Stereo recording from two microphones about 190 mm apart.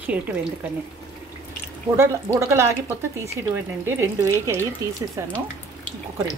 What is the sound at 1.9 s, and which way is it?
A woman's voice, 15° right (ahead or behind).